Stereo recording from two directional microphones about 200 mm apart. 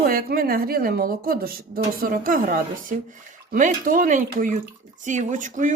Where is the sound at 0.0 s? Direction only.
45° right (ahead or behind).